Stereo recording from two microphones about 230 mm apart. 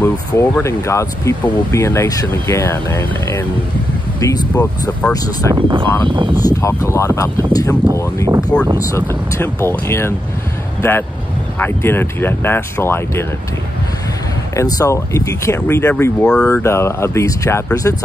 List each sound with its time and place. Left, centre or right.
0.0 s speech: centre
5.5 s speech: centre
6.4 s speech: centre
14.5 s speech: centre